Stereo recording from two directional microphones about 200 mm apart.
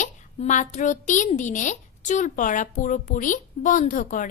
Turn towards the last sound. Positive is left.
turn(degrees=40)  # may be behind; listen again after turning